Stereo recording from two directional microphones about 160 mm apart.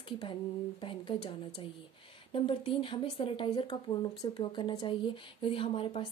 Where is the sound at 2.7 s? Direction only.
35° left (ahead or behind).